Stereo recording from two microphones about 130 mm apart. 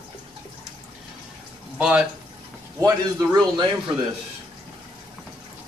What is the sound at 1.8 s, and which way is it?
Speech, 5° right (ahead or behind).